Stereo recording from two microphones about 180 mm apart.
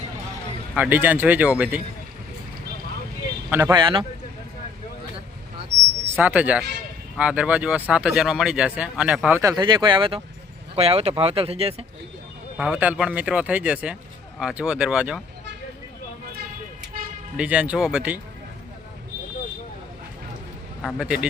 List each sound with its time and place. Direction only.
0.7 s speech: 10° right (ahead or behind)
3.5 s speech: 20° right (ahead or behind)
6.1 s speech: 10° right (ahead or behind)
9.4 s speech: 20° right (ahead or behind)
12.5 s speech: 10° right (ahead or behind)
16.9 s toot: 55° right (ahead or behind)
17.3 s speech: 5° right (ahead or behind)
20.8 s speech: 5° right (ahead or behind)